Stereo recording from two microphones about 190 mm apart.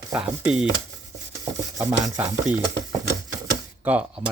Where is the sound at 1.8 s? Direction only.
15° right (ahead or behind).